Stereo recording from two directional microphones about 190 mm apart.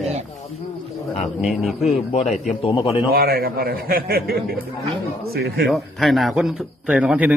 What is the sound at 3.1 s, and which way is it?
A man's voice, 50° right (ahead or behind).